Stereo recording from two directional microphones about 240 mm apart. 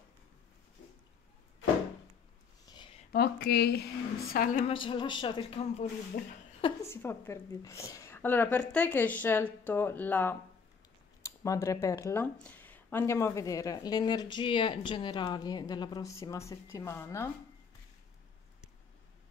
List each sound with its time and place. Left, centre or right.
2.6 s a sound: centre
3.1 s speech: left
4.6 s speech: left
6.9 s speech: centre